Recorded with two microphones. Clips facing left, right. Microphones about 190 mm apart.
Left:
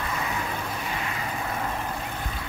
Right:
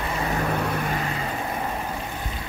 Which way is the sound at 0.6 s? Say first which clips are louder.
Right 6 dB; 60° right (ahead or behind).